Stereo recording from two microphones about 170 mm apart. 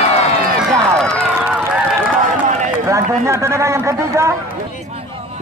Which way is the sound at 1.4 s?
10° right (ahead or behind).